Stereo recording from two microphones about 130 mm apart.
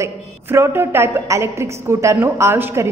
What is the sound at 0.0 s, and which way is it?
A woman's voice, 20° right (ahead or behind).